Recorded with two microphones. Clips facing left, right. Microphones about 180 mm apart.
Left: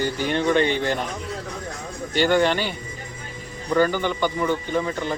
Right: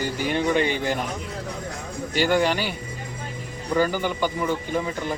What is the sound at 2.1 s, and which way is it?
Speech, 5° right (ahead or behind).